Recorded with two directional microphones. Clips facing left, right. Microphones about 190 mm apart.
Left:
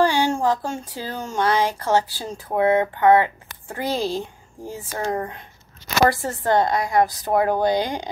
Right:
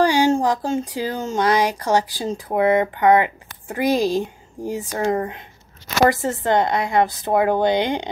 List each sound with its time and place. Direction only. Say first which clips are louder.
0.0 s a woman's voice: right 3 dB; 15° right (ahead or behind)